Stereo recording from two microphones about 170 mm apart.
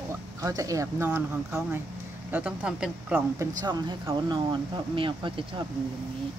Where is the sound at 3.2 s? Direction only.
20° right (ahead or behind).